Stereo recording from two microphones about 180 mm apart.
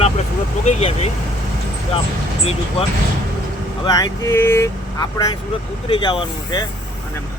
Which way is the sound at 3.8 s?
20° left (ahead or behind).